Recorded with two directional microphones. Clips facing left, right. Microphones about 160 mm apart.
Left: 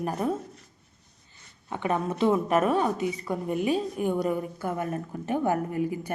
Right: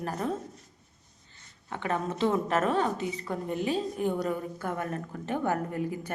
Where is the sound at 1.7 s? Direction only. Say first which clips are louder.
Left 3 dB; 15° left (ahead or behind).